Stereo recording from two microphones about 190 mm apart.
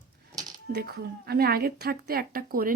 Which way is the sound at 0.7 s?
60° right (ahead or behind).